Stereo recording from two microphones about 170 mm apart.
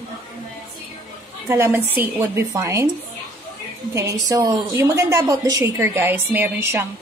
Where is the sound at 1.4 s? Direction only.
15° right (ahead or behind).